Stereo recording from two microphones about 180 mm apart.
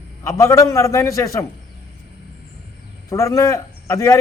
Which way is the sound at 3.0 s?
15° left (ahead or behind).